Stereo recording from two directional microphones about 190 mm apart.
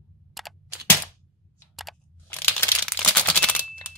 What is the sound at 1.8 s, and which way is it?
Crunch, centre (ahead or behind).